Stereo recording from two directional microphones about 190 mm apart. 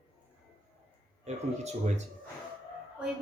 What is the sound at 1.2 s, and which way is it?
Speech, 35° right (ahead or behind).